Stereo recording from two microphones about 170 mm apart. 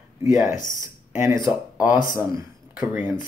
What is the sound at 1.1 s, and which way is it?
Speech, 15° right (ahead or behind).